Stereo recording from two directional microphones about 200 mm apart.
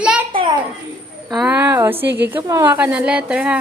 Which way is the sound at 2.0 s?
60° right (ahead or behind).